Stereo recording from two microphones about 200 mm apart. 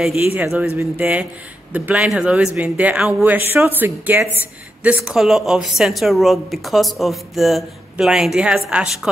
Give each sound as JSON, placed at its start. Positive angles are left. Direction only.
{"t": 0.0, "sound": "a woman's voice", "side_deg": 0}